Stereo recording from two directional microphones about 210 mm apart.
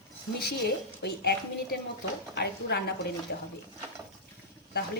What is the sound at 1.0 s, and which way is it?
Speech, 50° left (ahead or behind).